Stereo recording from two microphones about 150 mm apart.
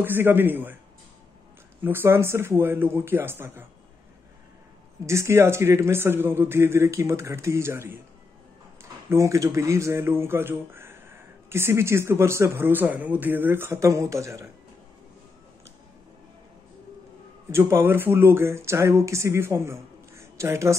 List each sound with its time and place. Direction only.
0.0 s speech: 15° right (ahead or behind)
1.8 s speech: 15° right (ahead or behind)
5.0 s speech: 20° right (ahead or behind)
9.1 s speech: 20° right (ahead or behind)
17.5 s speech: 15° right (ahead or behind)